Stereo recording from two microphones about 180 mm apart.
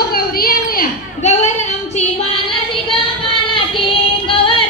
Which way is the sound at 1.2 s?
40° left (ahead or behind).